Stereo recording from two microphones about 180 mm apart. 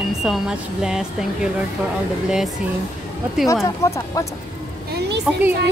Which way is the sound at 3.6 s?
15° left (ahead or behind).